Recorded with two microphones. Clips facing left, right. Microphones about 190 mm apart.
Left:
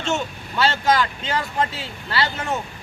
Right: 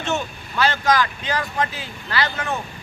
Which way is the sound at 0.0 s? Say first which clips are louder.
Even; 25° left (ahead or behind).